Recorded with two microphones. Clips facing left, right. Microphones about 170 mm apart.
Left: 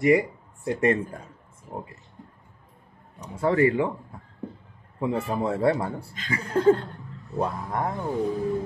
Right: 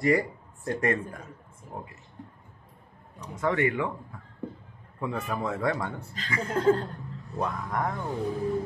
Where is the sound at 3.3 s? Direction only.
30° left (ahead or behind).